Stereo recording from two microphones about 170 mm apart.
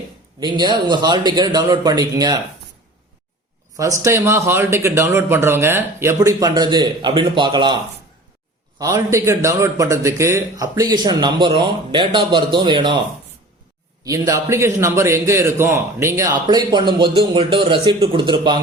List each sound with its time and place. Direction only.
0.3 s a man's voice: 25° right (ahead or behind)
3.8 s a man's voice: 20° right (ahead or behind)
8.8 s a man's voice: 20° right (ahead or behind)
14.0 s a man's voice: 20° right (ahead or behind)